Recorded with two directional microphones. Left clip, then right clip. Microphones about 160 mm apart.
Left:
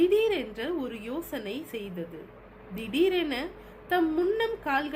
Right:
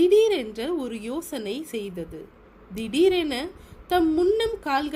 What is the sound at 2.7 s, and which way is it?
A woman's voice, 65° right (ahead or behind).